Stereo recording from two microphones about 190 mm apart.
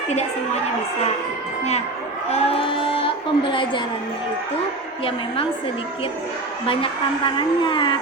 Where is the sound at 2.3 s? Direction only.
35° left (ahead or behind).